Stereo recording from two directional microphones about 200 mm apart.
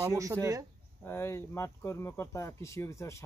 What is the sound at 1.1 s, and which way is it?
Speech, 10° left (ahead or behind).